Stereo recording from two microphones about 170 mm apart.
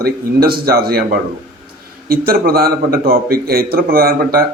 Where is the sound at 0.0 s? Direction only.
60° right (ahead or behind).